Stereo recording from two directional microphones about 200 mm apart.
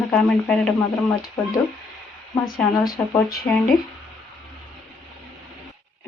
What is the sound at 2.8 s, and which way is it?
Speech, 20° left (ahead or behind).